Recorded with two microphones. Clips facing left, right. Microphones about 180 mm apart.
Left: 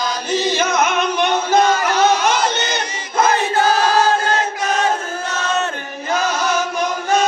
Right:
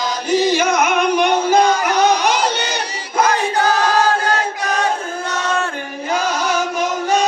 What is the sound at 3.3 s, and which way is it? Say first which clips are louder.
Choir: left 1 dB; 20° left (ahead or behind).